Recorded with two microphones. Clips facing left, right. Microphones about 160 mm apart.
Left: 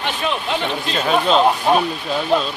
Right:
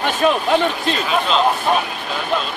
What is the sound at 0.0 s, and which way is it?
Speech, 45° right (ahead or behind).